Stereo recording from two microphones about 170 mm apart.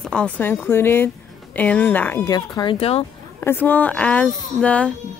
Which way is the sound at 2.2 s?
20° left (ahead or behind).